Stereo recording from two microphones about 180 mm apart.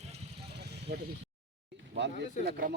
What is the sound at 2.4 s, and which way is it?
Speech, 60° right (ahead or behind).